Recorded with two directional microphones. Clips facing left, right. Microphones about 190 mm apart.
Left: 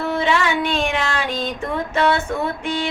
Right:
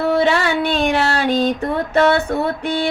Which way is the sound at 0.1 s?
35° right (ahead or behind).